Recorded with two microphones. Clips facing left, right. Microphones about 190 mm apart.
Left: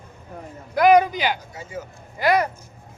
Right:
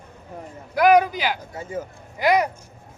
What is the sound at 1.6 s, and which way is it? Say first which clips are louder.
Speech: right 4 dB; 55° right (ahead or behind).